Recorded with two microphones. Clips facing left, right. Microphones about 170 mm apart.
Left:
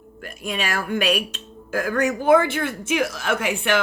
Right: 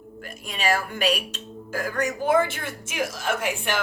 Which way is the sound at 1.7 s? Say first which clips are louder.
Left 5 dB; 60° left (ahead or behind).